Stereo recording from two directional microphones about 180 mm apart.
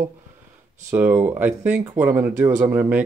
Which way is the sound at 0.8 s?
10° right (ahead or behind).